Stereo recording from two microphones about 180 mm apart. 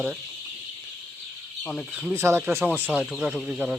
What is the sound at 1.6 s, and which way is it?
Speech, 5° left (ahead or behind).